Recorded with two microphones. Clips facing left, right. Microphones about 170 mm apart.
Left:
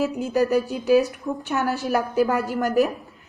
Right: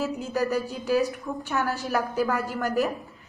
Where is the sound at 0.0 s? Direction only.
15° left (ahead or behind).